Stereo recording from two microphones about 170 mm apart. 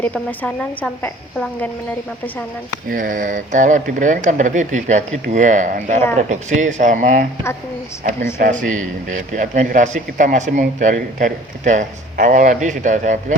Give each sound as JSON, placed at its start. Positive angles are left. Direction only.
{"t": 0.0, "sound": "a woman's voice", "side_deg": 10}
{"t": 2.9, "sound": "speech", "side_deg": -50}